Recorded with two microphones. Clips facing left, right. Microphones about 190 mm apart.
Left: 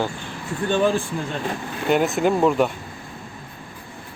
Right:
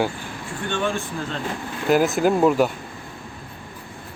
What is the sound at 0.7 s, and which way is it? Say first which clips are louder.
Speech: left 5 dB; 35° left (ahead or behind).